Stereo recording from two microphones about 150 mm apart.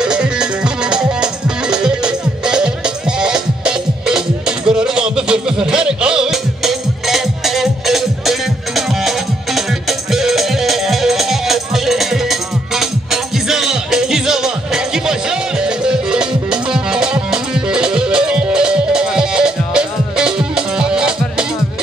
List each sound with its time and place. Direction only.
0.0 s music: 5° right (ahead or behind)